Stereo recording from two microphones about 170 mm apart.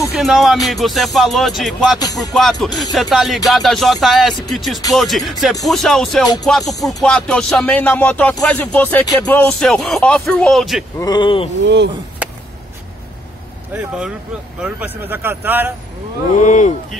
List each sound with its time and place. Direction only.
0.2 s speech: centre (ahead or behind)
11.0 s speech: 25° left (ahead or behind)
11.6 s speech: 90° right
13.7 s speech: 5° right (ahead or behind)
16.3 s speech: 45° left (ahead or behind)